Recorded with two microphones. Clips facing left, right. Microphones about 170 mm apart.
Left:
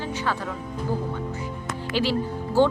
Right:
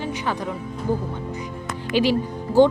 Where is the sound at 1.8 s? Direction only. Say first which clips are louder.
Right 5 dB; 15° right (ahead or behind).